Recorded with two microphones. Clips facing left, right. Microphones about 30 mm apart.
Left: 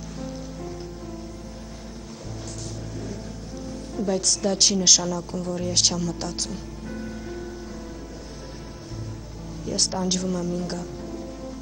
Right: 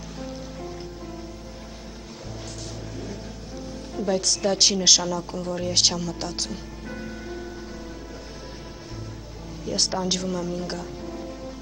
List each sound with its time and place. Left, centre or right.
0.2 s rain on surface: centre
3.0 s speech: centre
9.7 s speech: centre